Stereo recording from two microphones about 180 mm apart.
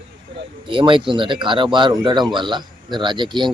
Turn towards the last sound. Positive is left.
turn(degrees=-25)  # may be behind; listen again after turning